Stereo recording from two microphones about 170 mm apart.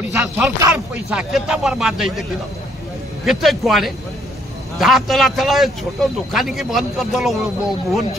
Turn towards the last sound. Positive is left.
turn(degrees=0)  # may be behind; listen again after turning